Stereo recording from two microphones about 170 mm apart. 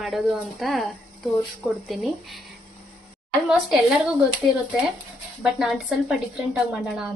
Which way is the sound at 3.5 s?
5° right (ahead or behind).